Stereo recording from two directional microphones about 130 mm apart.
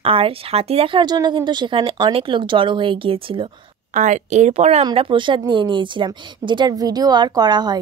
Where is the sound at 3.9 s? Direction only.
65° right (ahead or behind).